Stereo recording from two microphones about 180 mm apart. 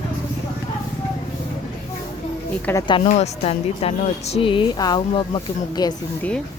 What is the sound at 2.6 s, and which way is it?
Speech, 15° left (ahead or behind).